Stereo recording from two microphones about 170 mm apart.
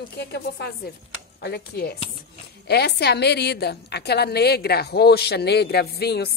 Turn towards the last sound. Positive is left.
turn(degrees=70)  # may be behind; listen again after turning